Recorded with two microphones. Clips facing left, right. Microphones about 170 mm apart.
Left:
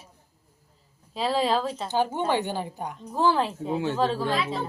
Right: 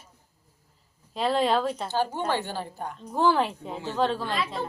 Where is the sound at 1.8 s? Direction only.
15° left (ahead or behind).